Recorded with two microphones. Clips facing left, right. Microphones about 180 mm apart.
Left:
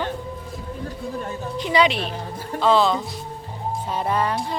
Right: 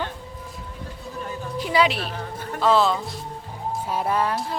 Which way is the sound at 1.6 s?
5° right (ahead or behind).